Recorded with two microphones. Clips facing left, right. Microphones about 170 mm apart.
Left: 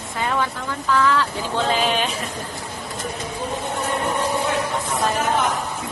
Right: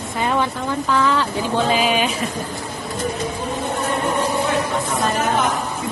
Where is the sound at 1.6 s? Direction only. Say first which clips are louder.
Right 1 dB; 10° right (ahead or behind).